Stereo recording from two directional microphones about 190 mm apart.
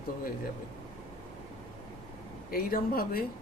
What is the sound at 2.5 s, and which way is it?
Speech, 50° left (ahead or behind).